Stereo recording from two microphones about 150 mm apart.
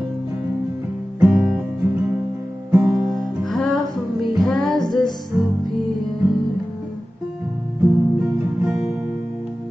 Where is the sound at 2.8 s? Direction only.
Centre (ahead or behind).